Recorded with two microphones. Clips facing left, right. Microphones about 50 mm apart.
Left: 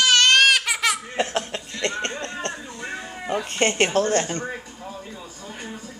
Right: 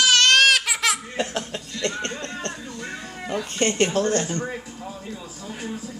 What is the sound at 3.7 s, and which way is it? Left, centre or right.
Speech, left.